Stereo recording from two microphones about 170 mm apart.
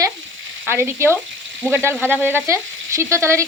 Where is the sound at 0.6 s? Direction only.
15° right (ahead or behind).